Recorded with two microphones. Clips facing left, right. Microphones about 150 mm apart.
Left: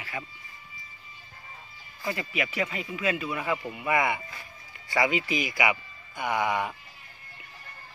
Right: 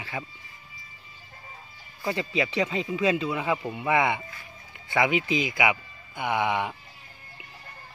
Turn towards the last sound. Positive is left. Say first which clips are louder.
# right 1 dB
turn(degrees=-15)  # may be behind; listen again after turning